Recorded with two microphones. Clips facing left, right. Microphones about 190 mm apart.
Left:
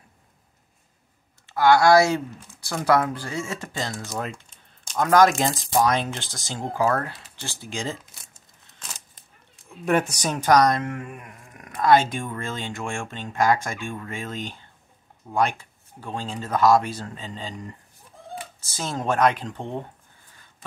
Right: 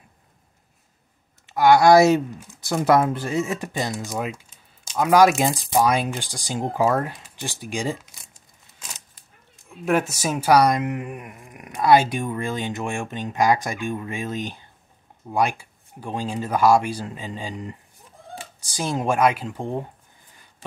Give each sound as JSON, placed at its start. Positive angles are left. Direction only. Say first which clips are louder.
{"t": 1.5, "sound": "speech", "louder": "right 2 dB", "side_deg": -15}
{"t": 9.7, "sound": "speech", "louder": "right 1 dB", "side_deg": 0}